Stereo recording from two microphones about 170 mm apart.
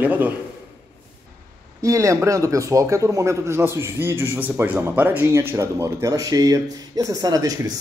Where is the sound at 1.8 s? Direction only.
20° right (ahead or behind).